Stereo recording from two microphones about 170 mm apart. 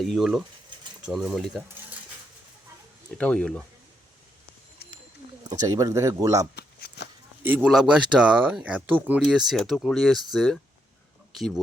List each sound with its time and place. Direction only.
0.0 s speech: centre (ahead or behind)
3.2 s speech: 5° left (ahead or behind)
5.4 s speech: 20° right (ahead or behind)
6.6 s a sound: 70° left (ahead or behind)
7.4 s speech: 10° right (ahead or behind)